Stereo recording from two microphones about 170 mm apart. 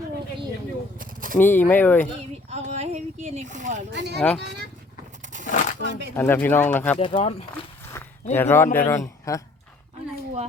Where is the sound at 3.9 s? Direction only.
90° right.